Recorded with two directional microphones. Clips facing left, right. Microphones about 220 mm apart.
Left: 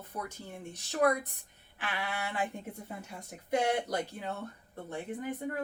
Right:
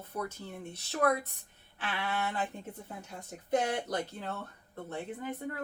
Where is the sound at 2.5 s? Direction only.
10° left (ahead or behind).